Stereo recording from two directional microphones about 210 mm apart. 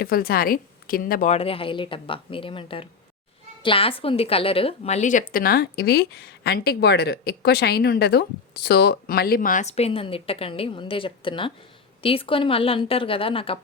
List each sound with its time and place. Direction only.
0.0 s a woman's voice: 45° left (ahead or behind); by 13.6 s 25° left (ahead or behind)